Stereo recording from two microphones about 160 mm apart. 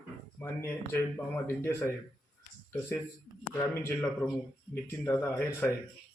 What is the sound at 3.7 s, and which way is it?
Speech, 15° left (ahead or behind).